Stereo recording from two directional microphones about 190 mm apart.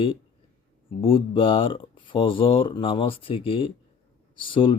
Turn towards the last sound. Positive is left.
turn(degrees=25)  # may be behind; listen again after turning